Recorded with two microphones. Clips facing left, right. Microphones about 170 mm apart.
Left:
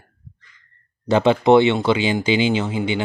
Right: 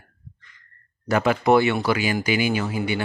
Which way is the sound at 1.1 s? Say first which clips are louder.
Left 4 dB; 25° left (ahead or behind).